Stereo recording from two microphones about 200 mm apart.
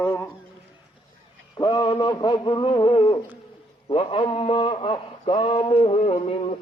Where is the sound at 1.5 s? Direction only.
15° left (ahead or behind).